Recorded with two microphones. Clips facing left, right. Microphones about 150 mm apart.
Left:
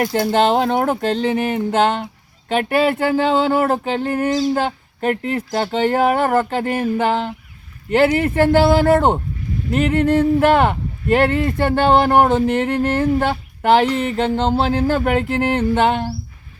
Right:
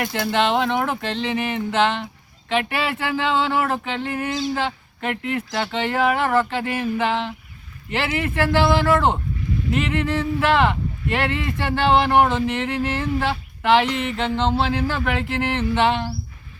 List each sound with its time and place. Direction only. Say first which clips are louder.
0.0 s speech: left 5 dB; 40° left (ahead or behind)